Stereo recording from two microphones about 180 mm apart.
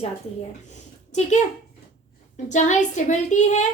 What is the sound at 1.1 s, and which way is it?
Speech, 40° left (ahead or behind).